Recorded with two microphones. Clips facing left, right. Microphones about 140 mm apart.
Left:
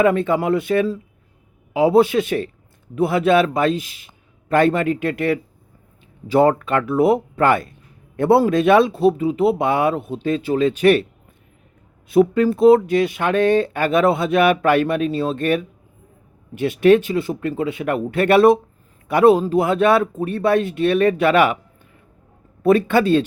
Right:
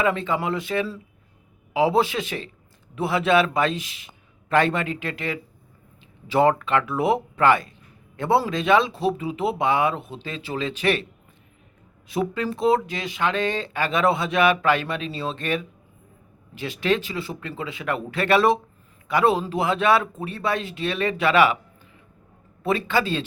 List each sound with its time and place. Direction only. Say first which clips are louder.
0.0 s speech: left 7 dB; 50° left (ahead or behind)
6.3 s speech: left 4 dB; 45° left (ahead or behind)
12.0 s speech: left 11 dB; 50° left (ahead or behind)
22.6 s speech: left 8 dB; 55° left (ahead or behind)